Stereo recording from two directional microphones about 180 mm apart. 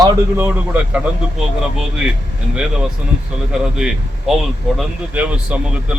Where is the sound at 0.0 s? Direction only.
20° right (ahead or behind).